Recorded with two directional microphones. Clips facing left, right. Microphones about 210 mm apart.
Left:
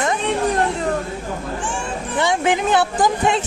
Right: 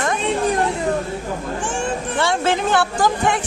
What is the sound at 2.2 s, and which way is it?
A woman's voice, 15° left (ahead or behind).